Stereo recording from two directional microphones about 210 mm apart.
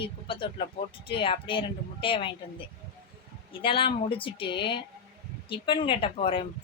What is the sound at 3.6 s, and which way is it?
Speech, 25° left (ahead or behind).